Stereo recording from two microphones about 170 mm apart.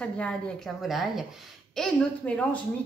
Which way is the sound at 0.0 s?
5° left (ahead or behind).